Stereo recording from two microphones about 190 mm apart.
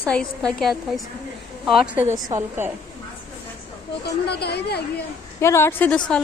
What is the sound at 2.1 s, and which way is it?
Speech, 20° right (ahead or behind).